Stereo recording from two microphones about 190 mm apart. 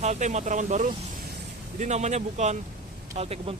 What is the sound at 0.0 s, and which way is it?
Speech, 35° right (ahead or behind).